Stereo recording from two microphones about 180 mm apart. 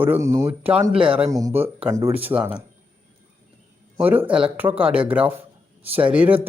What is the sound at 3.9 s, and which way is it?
Speech, 10° right (ahead or behind).